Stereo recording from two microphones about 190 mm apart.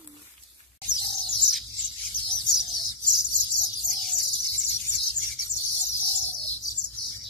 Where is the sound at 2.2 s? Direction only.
25° left (ahead or behind).